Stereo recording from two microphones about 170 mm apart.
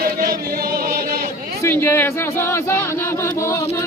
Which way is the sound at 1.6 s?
15° left (ahead or behind).